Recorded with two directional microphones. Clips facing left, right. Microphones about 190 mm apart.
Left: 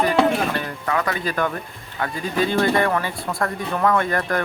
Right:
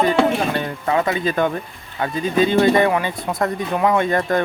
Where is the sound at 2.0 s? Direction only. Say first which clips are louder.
Right 5 dB; 20° right (ahead or behind).